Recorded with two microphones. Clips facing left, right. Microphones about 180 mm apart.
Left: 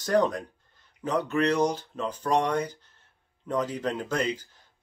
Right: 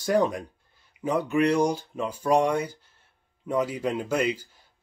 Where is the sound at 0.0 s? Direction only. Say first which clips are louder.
Right 1 dB; 10° right (ahead or behind).